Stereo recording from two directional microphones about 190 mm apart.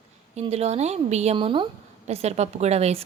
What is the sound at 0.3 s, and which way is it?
A woman's voice, 35° right (ahead or behind).